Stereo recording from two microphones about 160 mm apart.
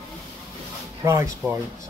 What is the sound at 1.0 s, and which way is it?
Speech, 15° right (ahead or behind).